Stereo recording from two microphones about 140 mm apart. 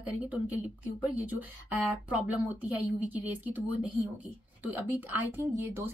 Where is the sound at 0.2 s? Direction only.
10° right (ahead or behind).